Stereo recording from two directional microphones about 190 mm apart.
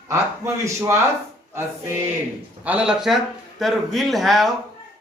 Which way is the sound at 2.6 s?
5° right (ahead or behind).